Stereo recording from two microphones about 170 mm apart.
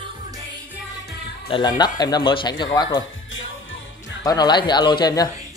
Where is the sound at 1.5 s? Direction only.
25° left (ahead or behind).